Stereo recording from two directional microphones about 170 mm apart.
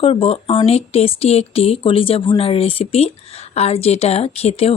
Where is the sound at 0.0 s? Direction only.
35° left (ahead or behind).